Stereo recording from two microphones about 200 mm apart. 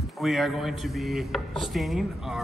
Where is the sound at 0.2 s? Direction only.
Centre (ahead or behind).